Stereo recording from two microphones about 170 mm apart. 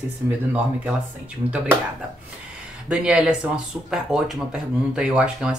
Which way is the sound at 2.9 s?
5° right (ahead or behind).